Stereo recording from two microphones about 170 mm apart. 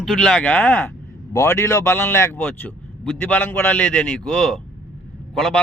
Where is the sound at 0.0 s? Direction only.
Centre (ahead or behind).